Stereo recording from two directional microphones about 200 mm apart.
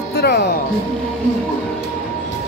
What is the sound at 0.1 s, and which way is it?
Music, 55° left (ahead or behind).